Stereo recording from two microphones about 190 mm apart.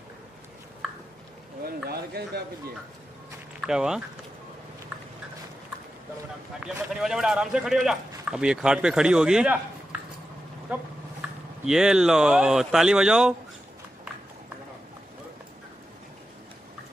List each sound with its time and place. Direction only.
1.7 s speech: 55° right (ahead or behind)
3.6 s speech: 5° right (ahead or behind)
6.6 s speech: 5° right (ahead or behind)
10.7 s speech: 5° right (ahead or behind)